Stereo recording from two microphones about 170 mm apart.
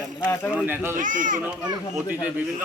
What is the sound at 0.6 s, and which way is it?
Speech, 10° right (ahead or behind).